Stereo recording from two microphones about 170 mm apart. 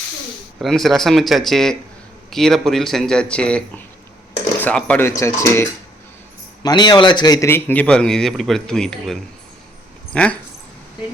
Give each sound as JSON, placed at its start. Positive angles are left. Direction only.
{"t": 0.6, "sound": "speech", "side_deg": 0}
{"t": 4.6, "sound": "a man's voice", "side_deg": 10}